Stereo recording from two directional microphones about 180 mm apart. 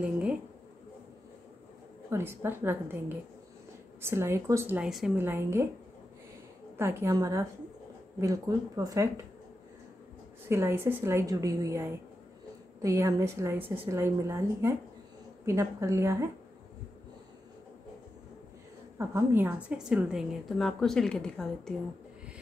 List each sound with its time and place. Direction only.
0.0 s speech: 5° right (ahead or behind)
2.0 s speech: 15° right (ahead or behind)
4.0 s speech: 15° right (ahead or behind)
6.8 s speech: 15° right (ahead or behind)
10.5 s speech: 15° right (ahead or behind)
18.9 s a woman's voice: 15° right (ahead or behind); by 21.7 s 5° left (ahead or behind)